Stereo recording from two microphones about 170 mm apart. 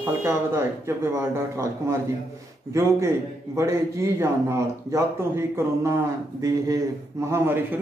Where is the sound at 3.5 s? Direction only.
15° right (ahead or behind).